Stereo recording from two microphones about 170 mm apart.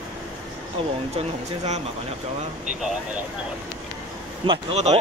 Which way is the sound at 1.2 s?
40° right (ahead or behind).